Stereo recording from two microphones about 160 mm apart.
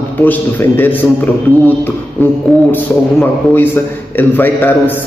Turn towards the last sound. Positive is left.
turn(degrees=10)  # may be behind; listen again after turning